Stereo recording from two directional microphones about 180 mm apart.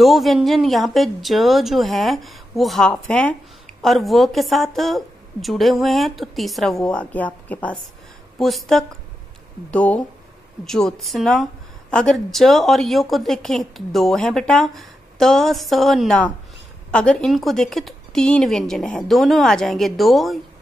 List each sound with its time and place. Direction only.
0.0 s a woman's voice: centre (ahead or behind)